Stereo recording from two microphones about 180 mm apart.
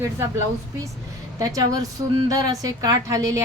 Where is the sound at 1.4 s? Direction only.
20° right (ahead or behind).